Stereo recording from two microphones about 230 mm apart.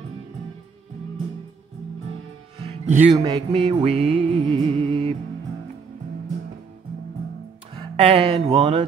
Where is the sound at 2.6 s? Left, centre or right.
Right.